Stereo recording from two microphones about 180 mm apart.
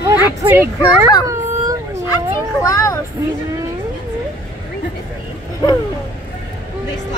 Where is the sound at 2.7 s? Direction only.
20° left (ahead or behind).